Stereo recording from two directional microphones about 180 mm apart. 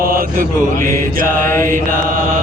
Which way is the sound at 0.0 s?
55° right (ahead or behind).